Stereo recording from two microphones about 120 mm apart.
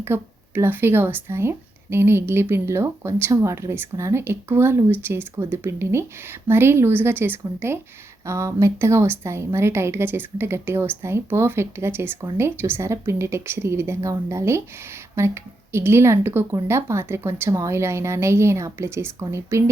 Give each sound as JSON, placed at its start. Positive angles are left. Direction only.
{"t": 0.0, "sound": "a woman's voice", "side_deg": -20}